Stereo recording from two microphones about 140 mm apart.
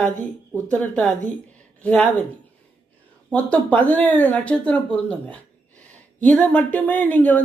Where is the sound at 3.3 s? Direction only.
10° left (ahead or behind).